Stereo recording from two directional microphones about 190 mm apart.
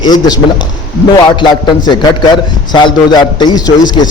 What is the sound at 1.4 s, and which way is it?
A man's voice, 25° left (ahead or behind).